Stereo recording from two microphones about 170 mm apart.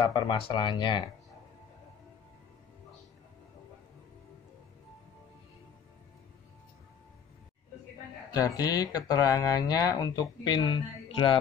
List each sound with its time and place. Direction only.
0.0 s speech: 25° left (ahead or behind)
8.3 s speech: 20° left (ahead or behind)